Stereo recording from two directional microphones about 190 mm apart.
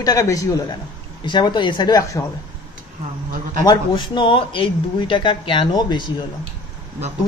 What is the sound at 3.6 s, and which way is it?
Speech, 25° left (ahead or behind).